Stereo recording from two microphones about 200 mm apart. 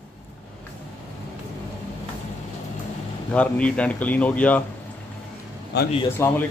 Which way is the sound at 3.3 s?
5° left (ahead or behind).